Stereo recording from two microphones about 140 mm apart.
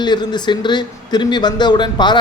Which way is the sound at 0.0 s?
30° left (ahead or behind).